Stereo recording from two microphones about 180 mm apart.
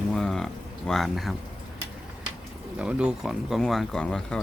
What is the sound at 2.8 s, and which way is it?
Speech, 5° right (ahead or behind).